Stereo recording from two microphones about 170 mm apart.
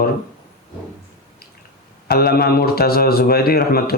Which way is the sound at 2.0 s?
65° left (ahead or behind).